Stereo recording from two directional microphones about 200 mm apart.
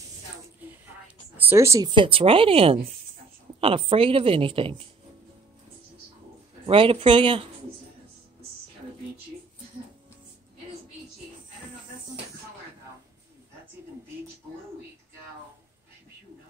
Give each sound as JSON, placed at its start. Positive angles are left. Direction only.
{"t": 1.0, "sound": "a woman's voice", "side_deg": -10}
{"t": 6.6, "sound": "a woman's voice", "side_deg": -25}